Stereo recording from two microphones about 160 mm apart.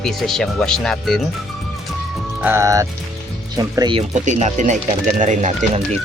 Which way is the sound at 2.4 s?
15° right (ahead or behind).